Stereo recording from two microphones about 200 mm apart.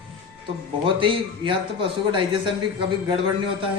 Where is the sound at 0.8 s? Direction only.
25° right (ahead or behind).